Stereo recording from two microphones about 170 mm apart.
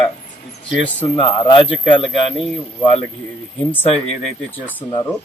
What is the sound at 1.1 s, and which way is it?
Speech, 30° left (ahead or behind).